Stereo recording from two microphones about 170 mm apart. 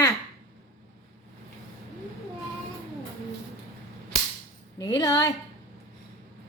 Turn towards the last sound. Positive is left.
turn(degrees=20)  # may be behind; listen again after turning